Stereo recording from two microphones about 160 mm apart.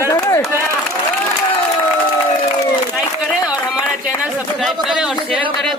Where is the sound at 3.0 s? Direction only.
5° right (ahead or behind).